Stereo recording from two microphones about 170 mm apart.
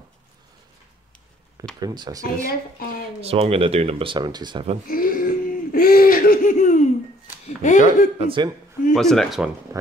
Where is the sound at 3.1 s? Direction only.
35° right (ahead or behind).